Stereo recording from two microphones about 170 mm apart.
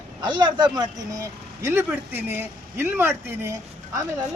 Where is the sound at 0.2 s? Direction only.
25° right (ahead or behind).